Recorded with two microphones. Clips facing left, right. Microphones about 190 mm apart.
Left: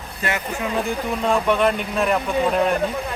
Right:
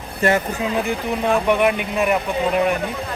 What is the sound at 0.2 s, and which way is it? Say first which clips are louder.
Speech: right 8 dB; 40° right (ahead or behind).